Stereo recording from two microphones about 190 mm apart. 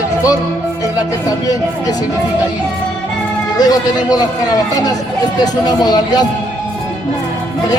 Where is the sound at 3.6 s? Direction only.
20° left (ahead or behind).